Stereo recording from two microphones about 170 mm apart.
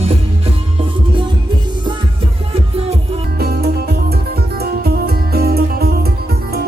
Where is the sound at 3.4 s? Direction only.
65° right (ahead or behind).